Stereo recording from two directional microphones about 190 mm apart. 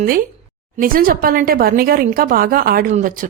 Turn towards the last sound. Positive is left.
turn(degrees=-45)  # may be behind; listen again after turning